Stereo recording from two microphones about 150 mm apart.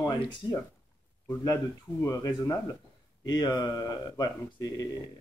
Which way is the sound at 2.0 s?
20° left (ahead or behind).